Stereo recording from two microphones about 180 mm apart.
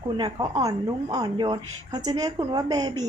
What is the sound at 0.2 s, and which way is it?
A woman's voice, 25° right (ahead or behind).